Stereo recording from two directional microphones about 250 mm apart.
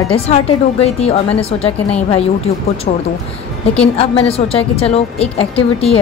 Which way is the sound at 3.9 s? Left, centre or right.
Left.